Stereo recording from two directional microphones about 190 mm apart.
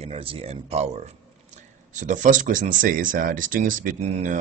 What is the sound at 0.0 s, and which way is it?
Speech, 30° right (ahead or behind).